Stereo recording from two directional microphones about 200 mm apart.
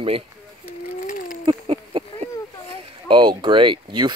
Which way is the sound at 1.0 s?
40° left (ahead or behind).